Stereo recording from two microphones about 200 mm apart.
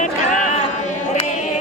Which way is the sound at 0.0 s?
35° left (ahead or behind).